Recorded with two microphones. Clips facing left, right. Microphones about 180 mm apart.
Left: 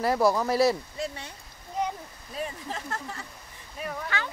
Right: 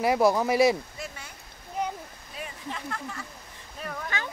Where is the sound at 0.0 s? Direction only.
20° right (ahead or behind).